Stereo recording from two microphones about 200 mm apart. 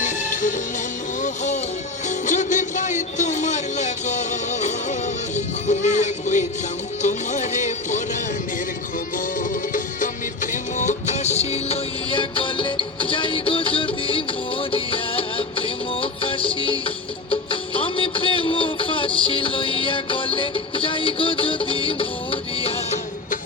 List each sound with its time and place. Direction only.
0.0 s music: 40° left (ahead or behind)
2.0 s music: 35° left (ahead or behind)
9.1 s music: 40° left (ahead or behind); by 23.0 s 25° left (ahead or behind)